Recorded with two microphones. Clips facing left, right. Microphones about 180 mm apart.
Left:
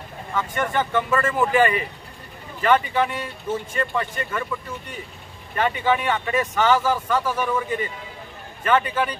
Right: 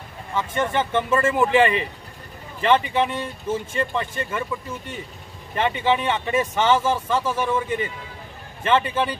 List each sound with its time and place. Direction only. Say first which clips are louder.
0.3 s speech: right 1 dB; 25° right (ahead or behind)